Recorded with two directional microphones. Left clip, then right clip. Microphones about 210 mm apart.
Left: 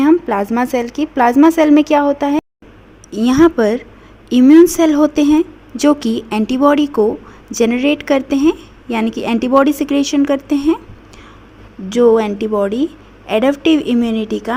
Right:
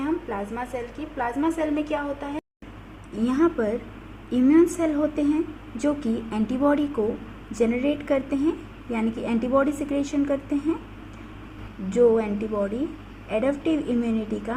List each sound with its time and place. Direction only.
0.0 s a woman's voice: 50° left (ahead or behind)
4.8 s a woman's voice: 45° left (ahead or behind)
11.9 s a woman's voice: 45° left (ahead or behind)